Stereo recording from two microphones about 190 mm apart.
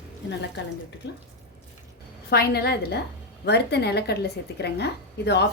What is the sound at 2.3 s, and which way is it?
A woman's voice, 55° left (ahead or behind).